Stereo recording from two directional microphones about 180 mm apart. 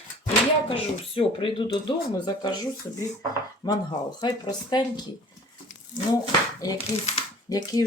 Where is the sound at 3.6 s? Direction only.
20° left (ahead or behind).